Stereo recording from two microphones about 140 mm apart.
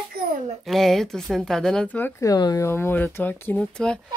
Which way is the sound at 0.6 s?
Centre (ahead or behind).